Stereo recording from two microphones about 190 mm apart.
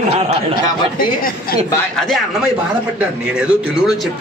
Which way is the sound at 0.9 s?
50° left (ahead or behind).